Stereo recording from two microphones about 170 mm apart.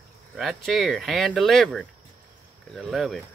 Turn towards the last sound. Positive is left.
turn(degrees=0)  # may be behind; listen again after turning